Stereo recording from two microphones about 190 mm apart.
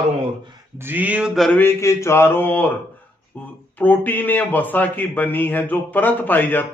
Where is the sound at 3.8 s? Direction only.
10° left (ahead or behind).